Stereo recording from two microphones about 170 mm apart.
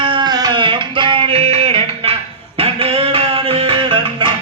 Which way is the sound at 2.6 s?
35° right (ahead or behind).